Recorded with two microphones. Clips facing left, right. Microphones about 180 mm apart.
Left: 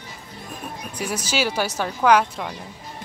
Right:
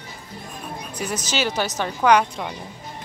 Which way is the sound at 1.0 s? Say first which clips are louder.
Left 1 dB; 10° left (ahead or behind).